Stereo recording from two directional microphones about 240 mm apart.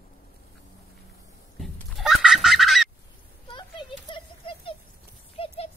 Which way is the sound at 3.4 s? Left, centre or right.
Left.